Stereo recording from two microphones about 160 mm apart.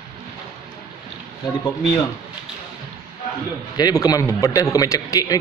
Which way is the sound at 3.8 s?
25° left (ahead or behind).